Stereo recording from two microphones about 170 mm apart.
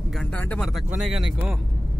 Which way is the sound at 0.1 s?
5° left (ahead or behind).